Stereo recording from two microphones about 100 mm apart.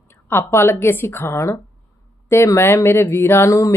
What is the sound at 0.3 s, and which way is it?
Speech, 25° left (ahead or behind).